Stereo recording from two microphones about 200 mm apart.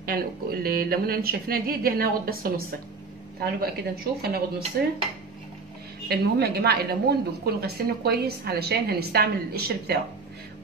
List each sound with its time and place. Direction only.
0.0 s a woman's voice: 50° right (ahead or behind)
3.6 s a woman's voice: 50° right (ahead or behind)
6.0 s a woman's voice: 55° right (ahead or behind)